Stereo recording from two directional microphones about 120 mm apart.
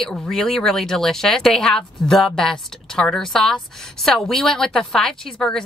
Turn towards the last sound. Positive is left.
turn(degrees=5)  # may be behind; listen again after turning